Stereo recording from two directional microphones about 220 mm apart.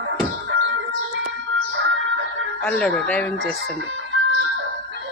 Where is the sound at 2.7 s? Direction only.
5° left (ahead or behind).